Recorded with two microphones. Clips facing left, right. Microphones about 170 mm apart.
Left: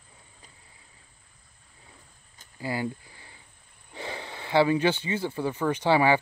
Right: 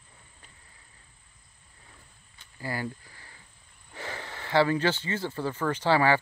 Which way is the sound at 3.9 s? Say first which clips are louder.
Left 2 dB; 15° left (ahead or behind).